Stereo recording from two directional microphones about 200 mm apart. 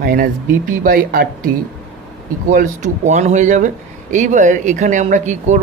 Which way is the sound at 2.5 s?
40° right (ahead or behind).